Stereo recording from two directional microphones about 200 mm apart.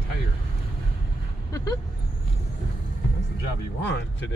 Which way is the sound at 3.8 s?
60° left (ahead or behind).